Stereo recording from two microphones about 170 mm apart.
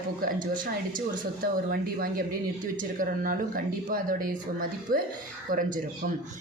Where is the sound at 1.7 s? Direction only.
60° right (ahead or behind).